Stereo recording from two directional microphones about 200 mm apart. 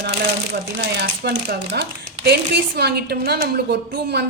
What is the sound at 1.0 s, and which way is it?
Speech, 55° right (ahead or behind).